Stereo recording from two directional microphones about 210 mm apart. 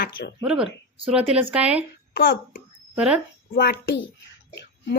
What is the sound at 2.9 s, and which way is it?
Speech, 5° right (ahead or behind).